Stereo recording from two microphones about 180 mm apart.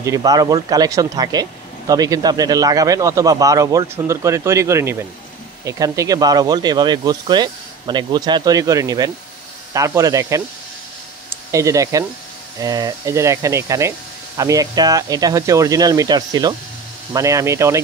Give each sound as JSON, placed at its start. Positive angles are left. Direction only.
{"t": 0.0, "sound": "speech", "side_deg": -20}
{"t": 11.5, "sound": "speech", "side_deg": -15}